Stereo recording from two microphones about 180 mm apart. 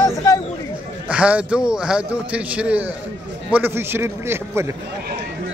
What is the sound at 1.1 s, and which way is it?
A man's voice, 5° right (ahead or behind).